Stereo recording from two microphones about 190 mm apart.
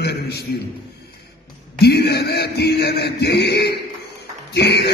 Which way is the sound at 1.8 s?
60° left (ahead or behind).